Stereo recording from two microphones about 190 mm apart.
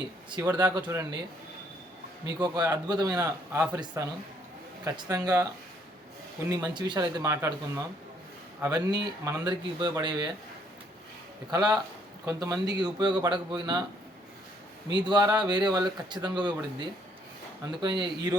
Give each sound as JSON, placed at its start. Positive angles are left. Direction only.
{"t": 0.3, "sound": "speech", "side_deg": -20}
{"t": 2.2, "sound": "a man's voice", "side_deg": -20}
{"t": 6.7, "sound": "speech", "side_deg": -25}
{"t": 11.5, "sound": "speech", "side_deg": -20}
{"t": 14.9, "sound": "speech", "side_deg": -25}